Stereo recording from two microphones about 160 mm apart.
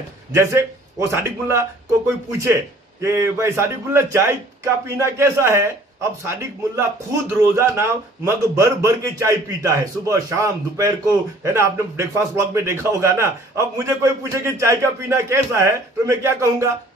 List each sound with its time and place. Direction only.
0.3 s a man's voice: 15° right (ahead or behind)